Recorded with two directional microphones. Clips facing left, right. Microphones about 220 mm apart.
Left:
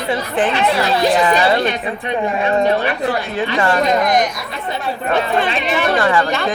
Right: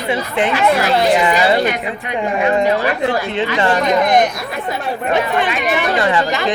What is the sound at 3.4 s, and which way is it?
Speech, 25° right (ahead or behind).